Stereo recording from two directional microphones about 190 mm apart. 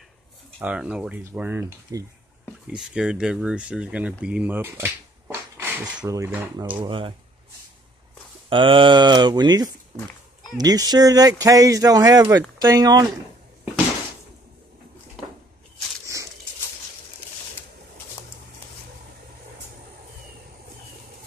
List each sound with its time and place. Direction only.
0.6 s speech: 5° right (ahead or behind)
6.8 s speech: 25° right (ahead or behind)
8.5 s speech: 25° right (ahead or behind)